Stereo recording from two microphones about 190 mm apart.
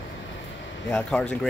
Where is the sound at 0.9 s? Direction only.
5° left (ahead or behind).